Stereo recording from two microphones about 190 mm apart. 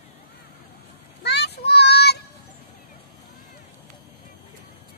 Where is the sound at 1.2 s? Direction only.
60° left (ahead or behind).